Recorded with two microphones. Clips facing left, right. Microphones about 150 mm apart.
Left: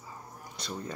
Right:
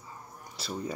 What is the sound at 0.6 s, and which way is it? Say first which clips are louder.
Speech: right 3 dB; 5° right (ahead or behind).